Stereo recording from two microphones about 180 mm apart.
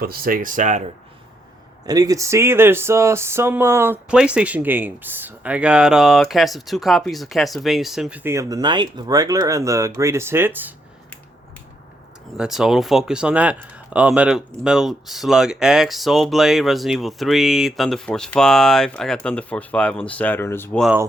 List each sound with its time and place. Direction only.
0.0 s speech: 55° right (ahead or behind)
1.9 s speech: 20° right (ahead or behind)
12.4 s speech: centre (ahead or behind)
20.7 s speech: 5° right (ahead or behind)